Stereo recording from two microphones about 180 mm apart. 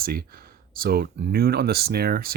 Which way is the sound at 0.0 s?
55° right (ahead or behind).